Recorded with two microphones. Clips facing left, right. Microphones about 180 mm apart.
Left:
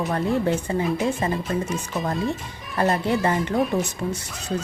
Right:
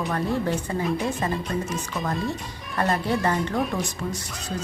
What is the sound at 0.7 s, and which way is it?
Speech, 25° left (ahead or behind).